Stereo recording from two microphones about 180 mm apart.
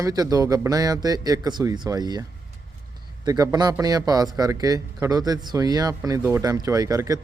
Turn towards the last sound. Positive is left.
turn(degrees=-20)  # may be behind; listen again after turning